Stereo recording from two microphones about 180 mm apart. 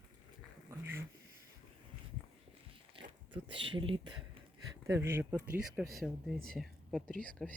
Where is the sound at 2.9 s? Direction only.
30° right (ahead or behind).